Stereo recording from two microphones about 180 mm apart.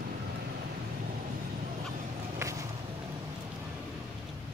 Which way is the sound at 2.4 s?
15° right (ahead or behind).